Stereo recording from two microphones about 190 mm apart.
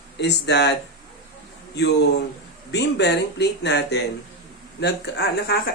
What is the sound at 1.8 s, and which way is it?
Speech, 60° left (ahead or behind).